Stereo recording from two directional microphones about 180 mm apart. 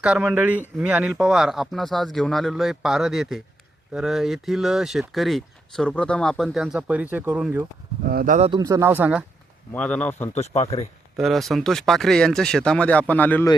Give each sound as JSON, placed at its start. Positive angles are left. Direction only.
{"t": 0.0, "sound": "speech", "side_deg": -5}
{"t": 8.0, "sound": "speech", "side_deg": -55}
{"t": 8.4, "sound": "a man's voice", "side_deg": -30}
{"t": 8.6, "sound": "speech", "side_deg": -15}
{"t": 9.7, "sound": "speech", "side_deg": 5}
{"t": 10.3, "sound": "speech", "side_deg": 35}
{"t": 11.2, "sound": "speech", "side_deg": 0}